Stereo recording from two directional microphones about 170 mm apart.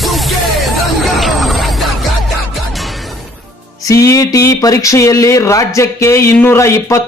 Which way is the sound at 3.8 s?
20° left (ahead or behind).